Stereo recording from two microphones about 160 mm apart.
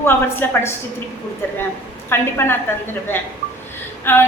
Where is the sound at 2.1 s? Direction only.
15° left (ahead or behind).